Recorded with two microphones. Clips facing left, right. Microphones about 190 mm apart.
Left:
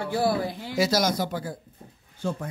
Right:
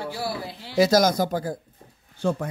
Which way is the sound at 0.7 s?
45° right (ahead or behind).